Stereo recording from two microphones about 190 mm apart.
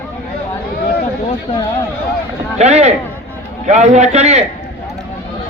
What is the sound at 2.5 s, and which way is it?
A man's voice, 35° right (ahead or behind).